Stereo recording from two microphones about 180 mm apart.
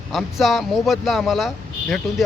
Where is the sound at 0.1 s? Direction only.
Centre (ahead or behind).